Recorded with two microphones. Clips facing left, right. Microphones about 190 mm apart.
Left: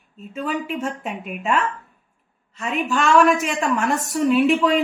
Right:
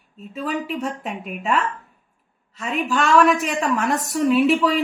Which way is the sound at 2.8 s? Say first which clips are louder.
Even; centre (ahead or behind).